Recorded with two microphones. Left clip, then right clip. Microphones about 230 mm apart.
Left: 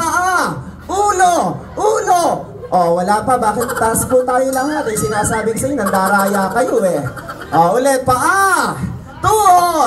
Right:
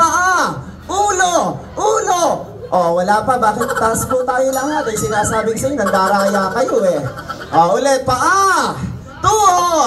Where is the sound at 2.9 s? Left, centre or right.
Left.